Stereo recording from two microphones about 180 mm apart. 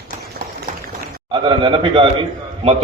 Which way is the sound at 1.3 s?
25° right (ahead or behind).